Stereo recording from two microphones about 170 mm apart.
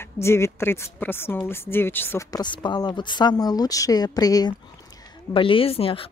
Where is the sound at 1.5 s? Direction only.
15° left (ahead or behind).